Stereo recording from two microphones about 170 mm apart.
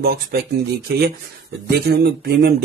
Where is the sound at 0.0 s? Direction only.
65° right (ahead or behind).